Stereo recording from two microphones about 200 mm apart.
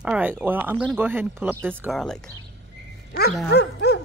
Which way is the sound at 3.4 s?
55° left (ahead or behind).